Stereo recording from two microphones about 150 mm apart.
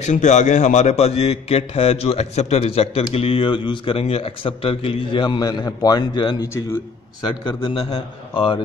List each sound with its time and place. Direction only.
0.0 s a man's voice: 55° left (ahead or behind); by 7.8 s 35° left (ahead or behind)